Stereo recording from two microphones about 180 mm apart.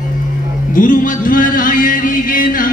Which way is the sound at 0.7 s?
50° left (ahead or behind).